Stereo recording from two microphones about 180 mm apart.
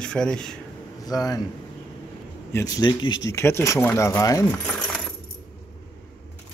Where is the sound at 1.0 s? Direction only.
20° left (ahead or behind).